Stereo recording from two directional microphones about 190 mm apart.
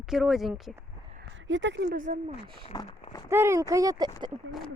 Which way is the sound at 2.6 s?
30° left (ahead or behind).